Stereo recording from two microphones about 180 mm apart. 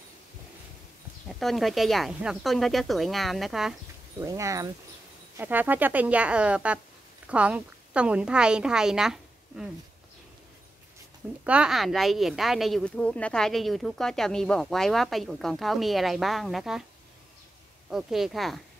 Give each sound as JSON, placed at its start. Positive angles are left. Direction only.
{"t": 1.4, "sound": "speech", "side_deg": 0}
{"t": 4.2, "sound": "a woman's voice", "side_deg": -15}
{"t": 11.4, "sound": "speech", "side_deg": -5}
{"t": 17.8, "sound": "speech", "side_deg": 0}